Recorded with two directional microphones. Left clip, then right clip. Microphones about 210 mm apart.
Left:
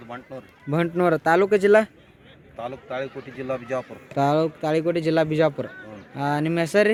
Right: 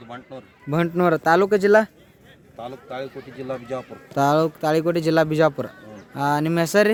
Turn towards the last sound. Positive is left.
turn(degrees=-15)  # may be behind; listen again after turning